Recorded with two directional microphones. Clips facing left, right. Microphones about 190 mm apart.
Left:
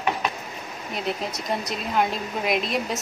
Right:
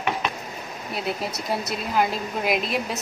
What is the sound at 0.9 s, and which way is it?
A woman's voice, 5° right (ahead or behind).